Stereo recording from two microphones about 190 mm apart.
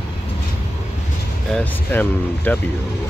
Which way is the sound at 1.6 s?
10° left (ahead or behind).